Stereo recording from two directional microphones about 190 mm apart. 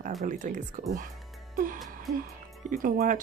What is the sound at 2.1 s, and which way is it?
Speech, 45° right (ahead or behind).